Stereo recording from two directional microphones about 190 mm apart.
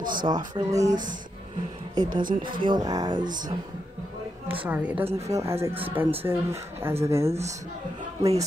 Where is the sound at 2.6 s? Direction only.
20° right (ahead or behind).